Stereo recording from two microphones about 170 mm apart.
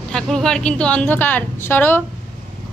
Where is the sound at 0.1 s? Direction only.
5° left (ahead or behind).